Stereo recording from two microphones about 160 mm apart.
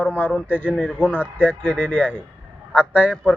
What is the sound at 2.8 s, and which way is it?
Speech, 10° right (ahead or behind).